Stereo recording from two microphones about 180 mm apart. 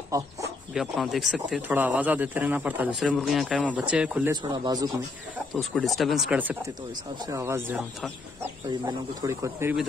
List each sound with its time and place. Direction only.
0.1 s speech: 20° right (ahead or behind)
0.7 s speech: centre (ahead or behind)
4.3 s speech: 25° right (ahead or behind)
5.5 s speech: centre (ahead or behind)
8.6 s speech: 25° right (ahead or behind)
9.3 s speech: 15° right (ahead or behind)